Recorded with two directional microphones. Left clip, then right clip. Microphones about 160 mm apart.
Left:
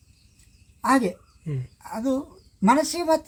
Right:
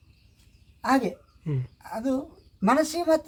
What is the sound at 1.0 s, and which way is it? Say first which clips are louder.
Speech: left 3 dB; 30° right (ahead or behind).